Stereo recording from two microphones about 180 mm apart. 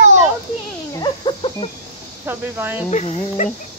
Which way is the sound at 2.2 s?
10° right (ahead or behind).